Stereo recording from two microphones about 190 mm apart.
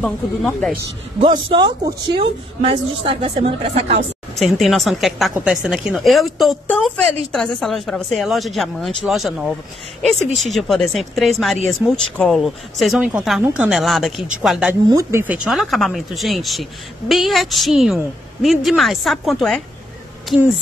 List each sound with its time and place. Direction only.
0.0 s a woman's voice: 5° left (ahead or behind)
1.2 s a woman's voice: 25° right (ahead or behind)
4.4 s a woman's voice: centre (ahead or behind)
10.5 s a woman's voice: centre (ahead or behind)
14.9 s a woman's voice: 15° right (ahead or behind); by 19.6 s centre (ahead or behind)